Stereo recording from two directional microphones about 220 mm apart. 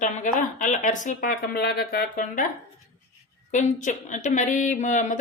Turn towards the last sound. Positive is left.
turn(degrees=35)  # may be behind; listen again after turning